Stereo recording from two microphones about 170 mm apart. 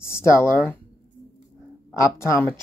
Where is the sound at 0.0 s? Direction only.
15° left (ahead or behind).